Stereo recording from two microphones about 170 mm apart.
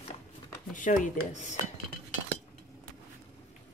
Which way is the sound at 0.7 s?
50° left (ahead or behind).